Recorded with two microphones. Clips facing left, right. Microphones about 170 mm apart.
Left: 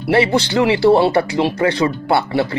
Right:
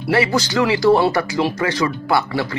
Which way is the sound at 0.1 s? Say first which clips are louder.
Left 3 dB; 25° left (ahead or behind).